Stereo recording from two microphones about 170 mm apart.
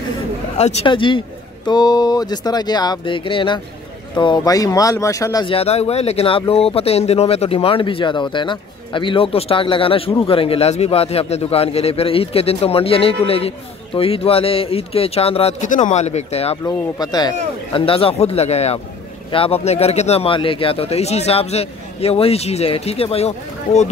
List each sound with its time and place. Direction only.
0.6 s speech: 35° left (ahead or behind)
5.5 s speech: 35° left (ahead or behind)
16.6 s speech: 20° left (ahead or behind); by 23.9 s 40° left (ahead or behind)